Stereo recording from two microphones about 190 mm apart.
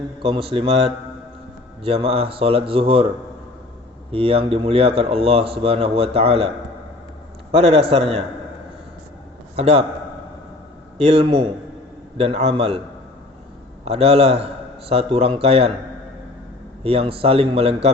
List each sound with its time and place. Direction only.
0.2 s speech: 30° right (ahead or behind)
4.1 s speech: 30° right (ahead or behind)
7.5 s speech: 30° right (ahead or behind)
9.6 s speech: 30° right (ahead or behind)
10.9 s speech: 30° right (ahead or behind)
13.8 s speech: 30° right (ahead or behind)
16.8 s speech: 30° right (ahead or behind)